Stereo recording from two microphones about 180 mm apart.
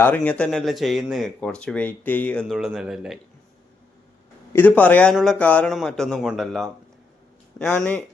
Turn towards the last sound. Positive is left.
turn(degrees=5)  # may be behind; listen again after turning